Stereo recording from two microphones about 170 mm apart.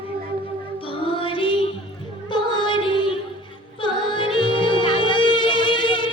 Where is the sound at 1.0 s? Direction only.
30° left (ahead or behind).